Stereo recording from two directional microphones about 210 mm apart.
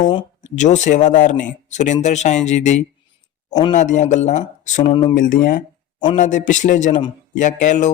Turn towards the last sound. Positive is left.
turn(degrees=35)  # may be behind; listen again after turning